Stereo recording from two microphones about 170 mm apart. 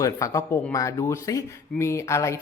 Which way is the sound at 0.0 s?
20° left (ahead or behind).